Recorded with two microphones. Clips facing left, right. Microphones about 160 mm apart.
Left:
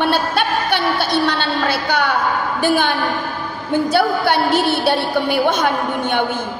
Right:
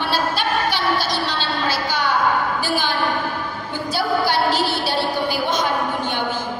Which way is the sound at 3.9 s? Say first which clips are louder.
Left 1 dB; 60° left (ahead or behind).